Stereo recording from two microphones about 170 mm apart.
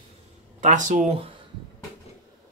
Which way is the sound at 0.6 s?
45° right (ahead or behind).